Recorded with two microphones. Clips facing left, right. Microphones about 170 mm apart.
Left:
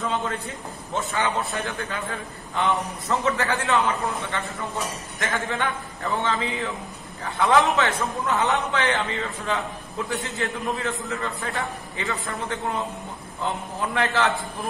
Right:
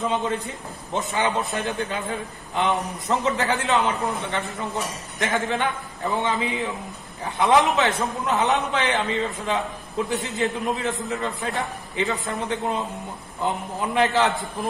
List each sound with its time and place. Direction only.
0.0 s a man's voice: 20° right (ahead or behind)